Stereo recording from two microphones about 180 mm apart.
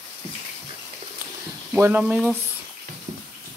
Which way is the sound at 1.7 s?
10° right (ahead or behind).